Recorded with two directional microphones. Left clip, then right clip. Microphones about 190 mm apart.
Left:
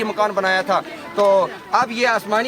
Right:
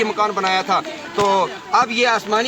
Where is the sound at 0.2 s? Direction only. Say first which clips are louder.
Left 4 dB; 20° left (ahead or behind).